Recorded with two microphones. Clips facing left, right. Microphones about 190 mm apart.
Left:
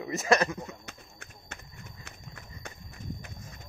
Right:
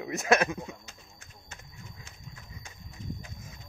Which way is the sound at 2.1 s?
65° left (ahead or behind).